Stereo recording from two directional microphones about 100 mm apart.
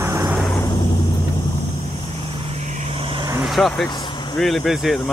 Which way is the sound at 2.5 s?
65° right (ahead or behind).